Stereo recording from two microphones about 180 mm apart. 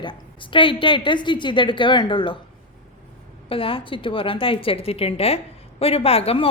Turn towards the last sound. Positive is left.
turn(degrees=35)  # may be behind; listen again after turning